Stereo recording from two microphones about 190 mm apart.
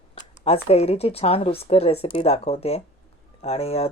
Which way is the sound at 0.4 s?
30° left (ahead or behind).